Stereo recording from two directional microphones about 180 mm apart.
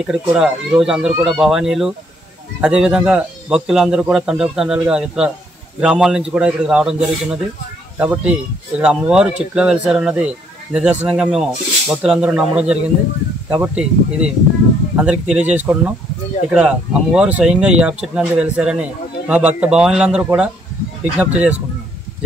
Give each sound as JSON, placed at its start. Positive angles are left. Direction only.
{"t": 0.0, "sound": "speech", "side_deg": -5}